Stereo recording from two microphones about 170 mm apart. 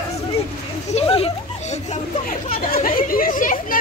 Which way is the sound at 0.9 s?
35° left (ahead or behind).